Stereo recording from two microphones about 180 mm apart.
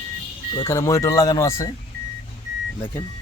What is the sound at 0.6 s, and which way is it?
Speech, 15° left (ahead or behind).